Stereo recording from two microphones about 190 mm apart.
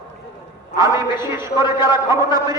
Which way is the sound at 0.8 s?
15° right (ahead or behind).